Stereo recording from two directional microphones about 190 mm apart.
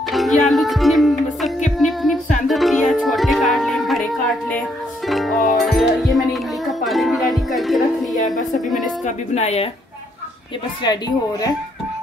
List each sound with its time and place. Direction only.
0.1 s music: centre (ahead or behind)
8.5 s a sound: centre (ahead or behind)
9.0 s speech: 35° left (ahead or behind)
10.8 s a woman's voice: 20° left (ahead or behind)